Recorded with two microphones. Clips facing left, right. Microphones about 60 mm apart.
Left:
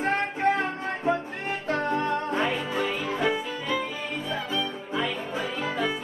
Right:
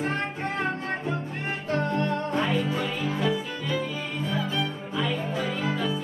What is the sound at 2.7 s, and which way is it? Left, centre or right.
Music, left.